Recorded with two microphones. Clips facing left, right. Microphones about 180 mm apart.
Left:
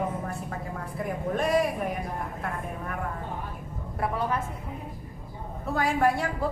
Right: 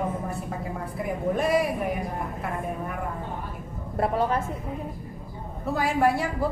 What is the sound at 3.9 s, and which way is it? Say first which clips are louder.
Speech: right 4 dB; 30° right (ahead or behind).